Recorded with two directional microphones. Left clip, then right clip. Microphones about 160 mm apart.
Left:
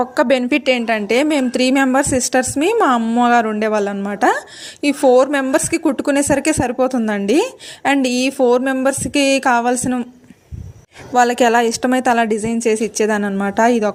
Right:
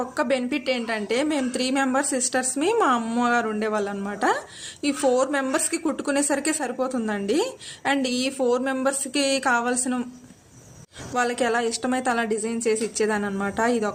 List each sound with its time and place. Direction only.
0.0 s a woman's voice: 50° left (ahead or behind)
11.1 s a woman's voice: 50° left (ahead or behind)